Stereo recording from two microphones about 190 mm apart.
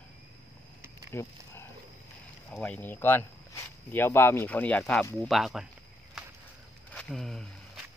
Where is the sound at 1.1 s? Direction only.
15° left (ahead or behind).